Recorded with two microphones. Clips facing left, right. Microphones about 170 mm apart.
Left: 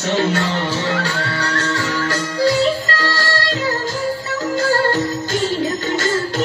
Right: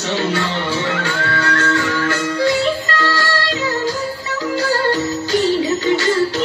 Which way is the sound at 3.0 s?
40° left (ahead or behind).